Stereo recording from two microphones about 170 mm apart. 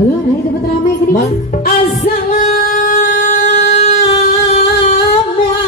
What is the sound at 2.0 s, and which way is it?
Music, 50° left (ahead or behind).